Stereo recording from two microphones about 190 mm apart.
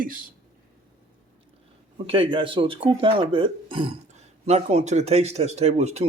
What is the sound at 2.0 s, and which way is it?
Speech, 30° right (ahead or behind).